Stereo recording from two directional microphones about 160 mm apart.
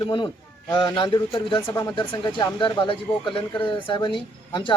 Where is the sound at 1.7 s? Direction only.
15° left (ahead or behind).